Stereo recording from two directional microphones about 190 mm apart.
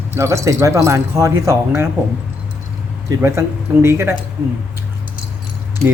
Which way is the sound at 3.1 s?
15° right (ahead or behind).